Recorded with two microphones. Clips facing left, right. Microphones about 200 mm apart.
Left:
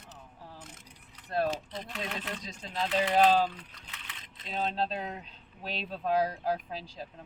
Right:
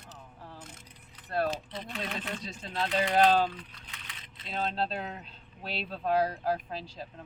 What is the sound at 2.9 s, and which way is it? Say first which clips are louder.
Speech: even; 5° left (ahead or behind).